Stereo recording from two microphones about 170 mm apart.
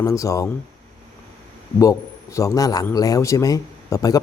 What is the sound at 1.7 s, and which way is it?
A man's voice, 20° left (ahead or behind).